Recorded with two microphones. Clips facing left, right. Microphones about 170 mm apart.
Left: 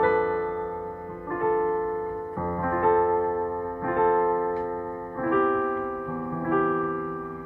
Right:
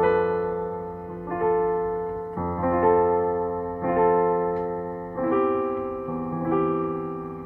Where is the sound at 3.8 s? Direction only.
15° right (ahead or behind).